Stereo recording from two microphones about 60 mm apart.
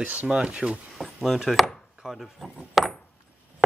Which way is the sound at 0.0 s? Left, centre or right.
Right.